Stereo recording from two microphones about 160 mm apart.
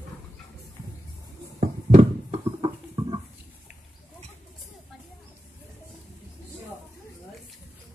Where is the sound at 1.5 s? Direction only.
45° right (ahead or behind).